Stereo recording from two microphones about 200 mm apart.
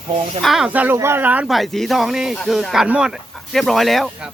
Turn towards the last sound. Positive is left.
turn(degrees=0)  # may be behind; listen again after turning